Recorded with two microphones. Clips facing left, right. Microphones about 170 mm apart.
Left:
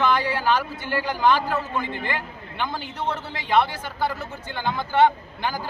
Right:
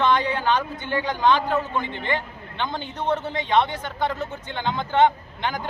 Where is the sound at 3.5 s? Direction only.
5° left (ahead or behind).